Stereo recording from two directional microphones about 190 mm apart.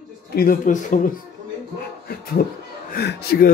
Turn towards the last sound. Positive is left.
turn(degrees=55)  # may be behind; listen again after turning